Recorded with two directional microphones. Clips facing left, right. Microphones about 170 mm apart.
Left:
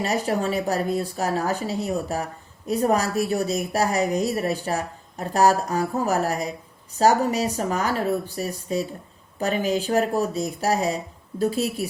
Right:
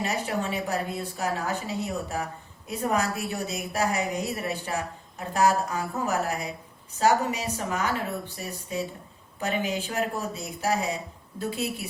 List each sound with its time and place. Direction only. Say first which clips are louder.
0.0 s a woman's voice: left 5 dB; 40° left (ahead or behind)